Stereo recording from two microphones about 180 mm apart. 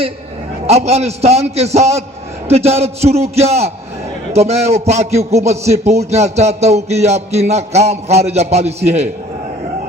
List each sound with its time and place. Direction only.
0.7 s a man's voice: 35° right (ahead or behind)